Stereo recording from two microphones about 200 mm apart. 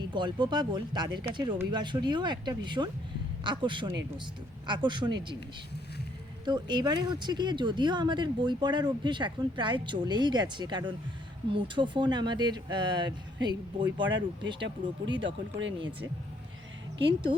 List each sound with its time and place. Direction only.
0.0 s speech: 25° right (ahead or behind)
6.4 s speech: 20° right (ahead or behind)
14.1 s speech: 65° right (ahead or behind)
15.1 s speech: 25° right (ahead or behind)
17.0 s speech: 25° right (ahead or behind)